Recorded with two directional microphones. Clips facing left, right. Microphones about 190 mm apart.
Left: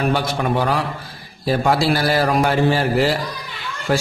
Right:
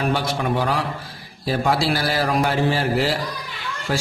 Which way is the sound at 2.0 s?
55° left (ahead or behind).